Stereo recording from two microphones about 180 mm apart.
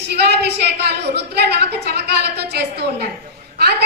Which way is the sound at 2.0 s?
65° right (ahead or behind).